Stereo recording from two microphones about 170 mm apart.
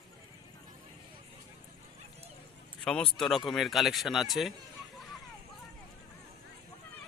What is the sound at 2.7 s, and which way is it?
Speech, 5° left (ahead or behind).